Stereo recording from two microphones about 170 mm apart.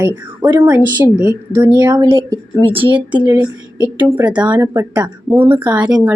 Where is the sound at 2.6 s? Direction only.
30° right (ahead or behind).